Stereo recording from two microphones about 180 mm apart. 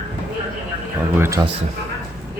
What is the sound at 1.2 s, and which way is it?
Speech, 15° right (ahead or behind).